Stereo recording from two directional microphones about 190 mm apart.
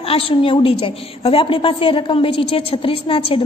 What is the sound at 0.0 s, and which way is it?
A woman's voice, 30° left (ahead or behind).